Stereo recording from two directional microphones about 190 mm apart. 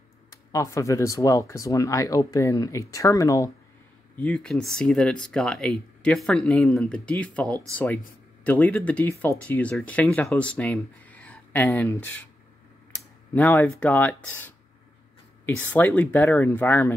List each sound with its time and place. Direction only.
0.3 s speech: 15° left (ahead or behind)
4.2 s speech: 5° left (ahead or behind)